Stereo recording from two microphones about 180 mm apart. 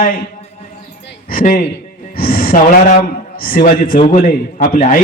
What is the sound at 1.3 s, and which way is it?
Speech, 50° left (ahead or behind).